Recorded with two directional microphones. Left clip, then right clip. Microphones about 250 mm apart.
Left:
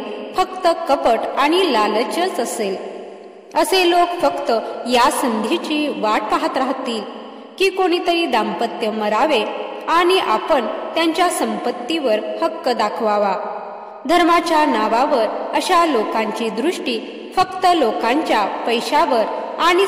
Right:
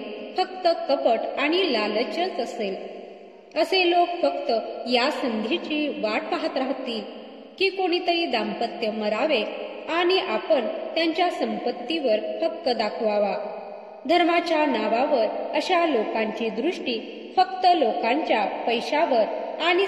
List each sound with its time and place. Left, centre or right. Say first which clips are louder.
0.4 s a woman's voice: left 6 dB; left